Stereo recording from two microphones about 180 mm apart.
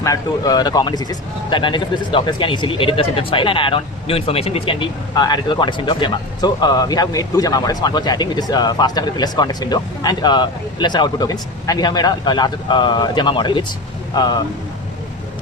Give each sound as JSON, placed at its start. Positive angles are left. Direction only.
{"t": 0.0, "sound": "speech", "side_deg": 20}